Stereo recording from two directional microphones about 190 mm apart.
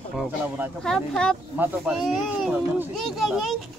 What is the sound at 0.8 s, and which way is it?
Speech, 5° left (ahead or behind).